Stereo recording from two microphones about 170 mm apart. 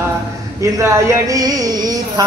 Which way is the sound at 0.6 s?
15° right (ahead or behind).